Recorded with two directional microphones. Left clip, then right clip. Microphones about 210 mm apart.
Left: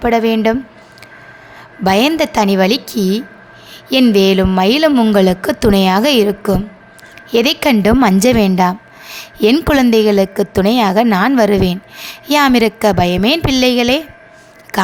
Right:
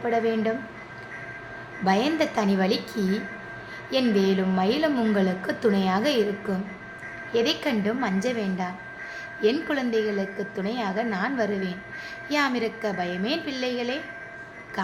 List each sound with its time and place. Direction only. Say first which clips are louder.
0.0 s a woman's voice: left 11 dB; 55° left (ahead or behind)
1.8 s a woman's voice: left 11 dB; 55° left (ahead or behind)